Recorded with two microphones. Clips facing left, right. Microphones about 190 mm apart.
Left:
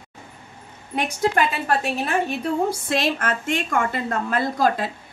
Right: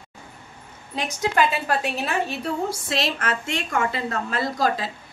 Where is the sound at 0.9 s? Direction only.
55° left (ahead or behind).